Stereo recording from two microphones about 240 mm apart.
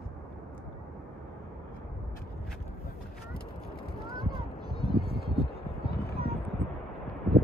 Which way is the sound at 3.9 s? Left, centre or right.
Left.